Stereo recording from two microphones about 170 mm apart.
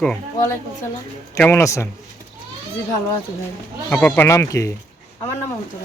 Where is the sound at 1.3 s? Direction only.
15° left (ahead or behind).